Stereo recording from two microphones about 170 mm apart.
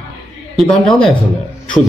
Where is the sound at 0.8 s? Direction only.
Centre (ahead or behind).